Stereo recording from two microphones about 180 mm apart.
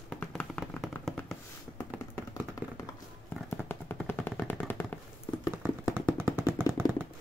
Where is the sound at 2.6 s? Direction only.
20° left (ahead or behind).